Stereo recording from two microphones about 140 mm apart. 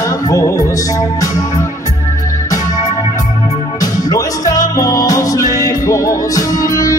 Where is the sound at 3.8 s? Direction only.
25° left (ahead or behind).